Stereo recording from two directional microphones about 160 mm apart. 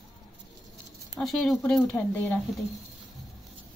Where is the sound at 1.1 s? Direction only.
Centre (ahead or behind).